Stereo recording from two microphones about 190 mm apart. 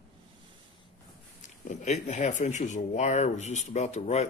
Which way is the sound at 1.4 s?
40° left (ahead or behind).